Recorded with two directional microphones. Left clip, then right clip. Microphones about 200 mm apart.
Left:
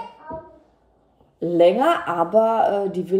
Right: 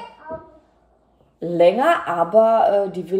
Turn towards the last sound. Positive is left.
turn(degrees=5)  # may be behind; listen again after turning